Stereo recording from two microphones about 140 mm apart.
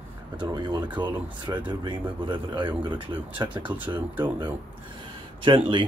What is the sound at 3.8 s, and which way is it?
Speech, 15° right (ahead or behind).